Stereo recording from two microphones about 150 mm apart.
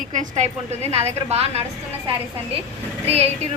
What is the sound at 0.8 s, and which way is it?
Speech, 45° right (ahead or behind).